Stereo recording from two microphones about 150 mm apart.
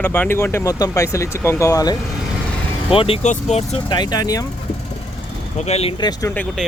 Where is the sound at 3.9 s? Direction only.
30° left (ahead or behind).